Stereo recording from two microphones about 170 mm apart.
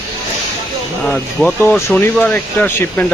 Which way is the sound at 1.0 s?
5° left (ahead or behind).